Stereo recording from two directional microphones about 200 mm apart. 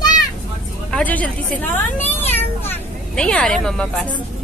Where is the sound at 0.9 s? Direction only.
5° left (ahead or behind).